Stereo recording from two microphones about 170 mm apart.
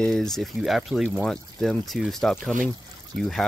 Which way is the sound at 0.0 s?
5° left (ahead or behind).